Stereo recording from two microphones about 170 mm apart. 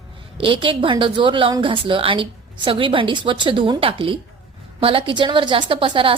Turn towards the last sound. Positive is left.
turn(degrees=-30)  # may be behind; listen again after turning